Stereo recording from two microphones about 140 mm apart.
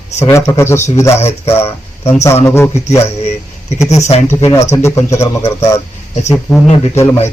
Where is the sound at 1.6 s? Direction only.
45° left (ahead or behind).